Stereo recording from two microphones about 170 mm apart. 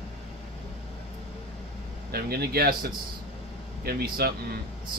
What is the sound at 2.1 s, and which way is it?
Speech, 65° right (ahead or behind).